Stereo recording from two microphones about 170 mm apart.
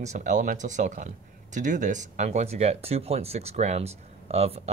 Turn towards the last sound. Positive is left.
turn(degrees=-35)  # may be behind; listen again after turning